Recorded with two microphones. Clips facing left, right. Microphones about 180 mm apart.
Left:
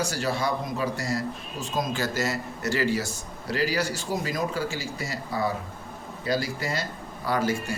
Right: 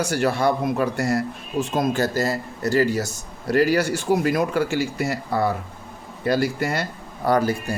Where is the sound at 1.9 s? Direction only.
35° right (ahead or behind); by 7.4 s 55° right (ahead or behind).